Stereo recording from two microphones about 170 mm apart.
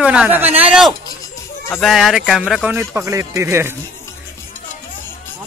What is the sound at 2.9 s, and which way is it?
Speech, 15° right (ahead or behind).